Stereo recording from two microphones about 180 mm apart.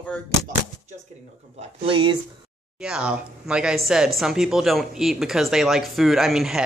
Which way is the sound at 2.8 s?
5° right (ahead or behind).